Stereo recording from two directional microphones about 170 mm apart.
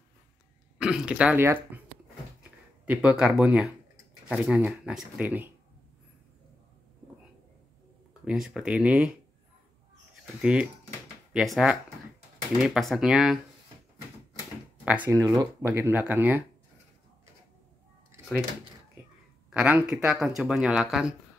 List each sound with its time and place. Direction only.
0.7 s speech: 5° right (ahead or behind)
2.8 s speech: 10° right (ahead or behind)
8.1 s speech: 5° right (ahead or behind)
10.4 s speech: 5° right (ahead or behind)
14.9 s speech: 15° right (ahead or behind)
19.5 s speech: 5° right (ahead or behind)